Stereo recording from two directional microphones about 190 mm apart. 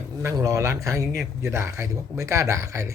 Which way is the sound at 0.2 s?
15° right (ahead or behind).